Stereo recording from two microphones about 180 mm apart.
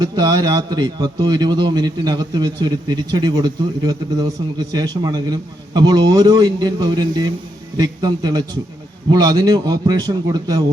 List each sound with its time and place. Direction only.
0.0 s a man's voice: 25° right (ahead or behind)